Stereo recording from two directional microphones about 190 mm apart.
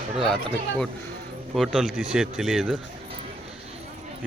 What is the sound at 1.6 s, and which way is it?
A child's voice, centre (ahead or behind).